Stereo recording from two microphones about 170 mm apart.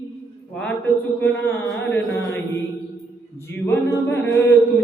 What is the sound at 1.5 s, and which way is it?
Music, 10° left (ahead or behind).